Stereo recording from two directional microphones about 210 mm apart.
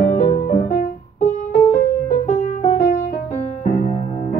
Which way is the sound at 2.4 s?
35° left (ahead or behind).